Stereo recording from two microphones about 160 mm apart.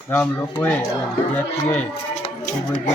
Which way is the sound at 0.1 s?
10° left (ahead or behind).